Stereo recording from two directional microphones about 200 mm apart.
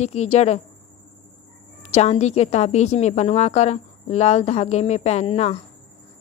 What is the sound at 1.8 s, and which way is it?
Speech, 35° left (ahead or behind).